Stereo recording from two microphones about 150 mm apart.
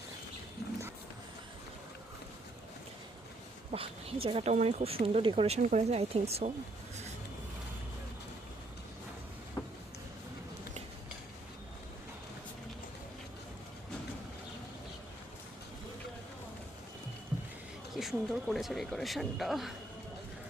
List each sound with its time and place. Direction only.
3.7 s speech: 40° right (ahead or behind)
9.6 s a sound: 20° left (ahead or behind)
17.9 s speech: centre (ahead or behind)